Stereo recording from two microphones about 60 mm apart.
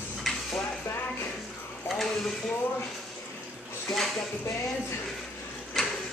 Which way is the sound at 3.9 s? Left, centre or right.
Centre.